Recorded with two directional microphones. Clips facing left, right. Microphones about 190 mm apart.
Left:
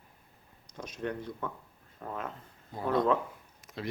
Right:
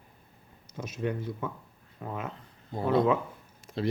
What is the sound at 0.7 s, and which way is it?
Speech, 5° right (ahead or behind).